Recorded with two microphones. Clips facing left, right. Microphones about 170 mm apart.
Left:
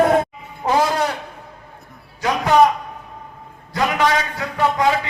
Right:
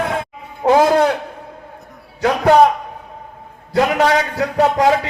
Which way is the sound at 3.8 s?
60° right (ahead or behind).